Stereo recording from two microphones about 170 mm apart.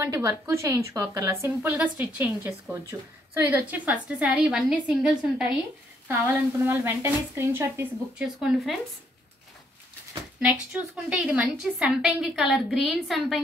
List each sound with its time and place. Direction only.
0.0 s a woman's voice: 20° right (ahead or behind)
10.4 s a woman's voice: 5° right (ahead or behind)